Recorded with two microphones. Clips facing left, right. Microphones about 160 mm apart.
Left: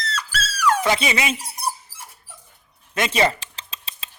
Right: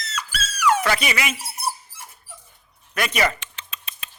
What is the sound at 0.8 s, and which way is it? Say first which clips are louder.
Speech: left 2 dB; 25° left (ahead or behind).